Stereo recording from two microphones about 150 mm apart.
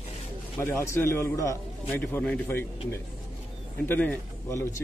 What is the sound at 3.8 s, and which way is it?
Speech, 10° left (ahead or behind).